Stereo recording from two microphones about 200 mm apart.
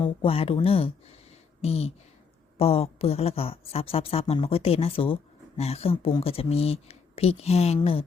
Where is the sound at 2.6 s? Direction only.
30° left (ahead or behind).